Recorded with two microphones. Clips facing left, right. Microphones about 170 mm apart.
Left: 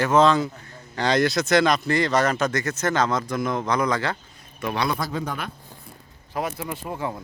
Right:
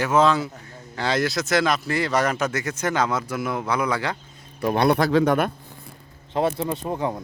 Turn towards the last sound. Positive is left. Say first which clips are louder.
# right 4 dB
turn(degrees=-20)  # may be behind; listen again after turning